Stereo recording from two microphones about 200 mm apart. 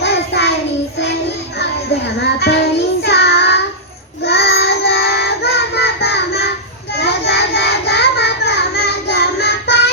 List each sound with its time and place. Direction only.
0.0 s child singing: 55° left (ahead or behind)
2.2 s child singing: 55° left (ahead or behind)